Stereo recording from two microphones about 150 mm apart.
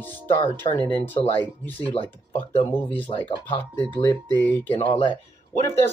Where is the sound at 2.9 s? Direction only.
35° left (ahead or behind).